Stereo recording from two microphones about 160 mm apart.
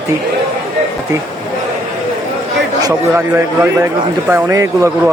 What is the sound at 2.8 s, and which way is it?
A man's voice, 15° right (ahead or behind).